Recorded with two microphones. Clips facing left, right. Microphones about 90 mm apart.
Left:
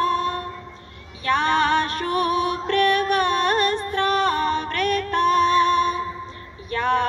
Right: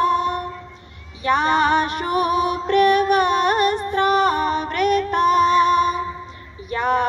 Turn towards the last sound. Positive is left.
turn(degrees=-15)  # may be behind; listen again after turning